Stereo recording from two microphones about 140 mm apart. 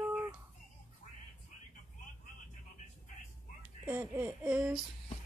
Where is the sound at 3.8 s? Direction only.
15° right (ahead or behind).